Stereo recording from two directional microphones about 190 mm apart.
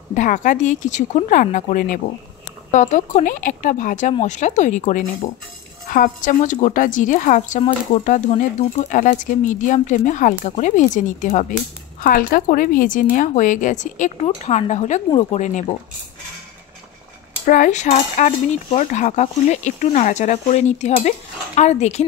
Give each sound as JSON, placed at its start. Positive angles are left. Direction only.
{"t": 0.1, "sound": "a woman's voice", "side_deg": 40}
{"t": 17.5, "sound": "a woman's voice", "side_deg": 40}